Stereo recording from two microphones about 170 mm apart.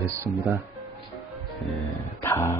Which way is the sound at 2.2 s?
15° left (ahead or behind).